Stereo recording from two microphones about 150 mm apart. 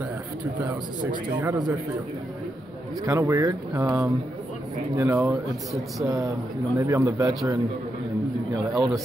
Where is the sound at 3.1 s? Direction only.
20° right (ahead or behind).